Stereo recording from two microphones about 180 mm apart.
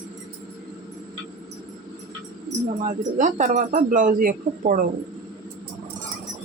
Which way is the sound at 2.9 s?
45° right (ahead or behind).